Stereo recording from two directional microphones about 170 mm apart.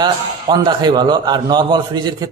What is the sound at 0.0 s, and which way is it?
A man's voice, 25° right (ahead or behind).